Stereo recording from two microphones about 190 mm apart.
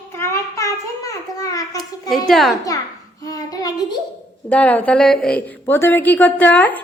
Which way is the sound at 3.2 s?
20° left (ahead or behind).